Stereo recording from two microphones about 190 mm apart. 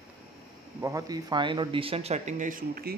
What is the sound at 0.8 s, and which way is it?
Speech, 15° right (ahead or behind).